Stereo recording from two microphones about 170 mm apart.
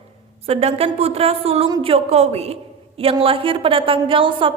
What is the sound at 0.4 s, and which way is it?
A woman's voice, 35° right (ahead or behind).